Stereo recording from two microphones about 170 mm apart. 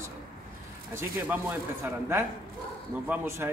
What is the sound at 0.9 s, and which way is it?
A man's voice, 15° right (ahead or behind).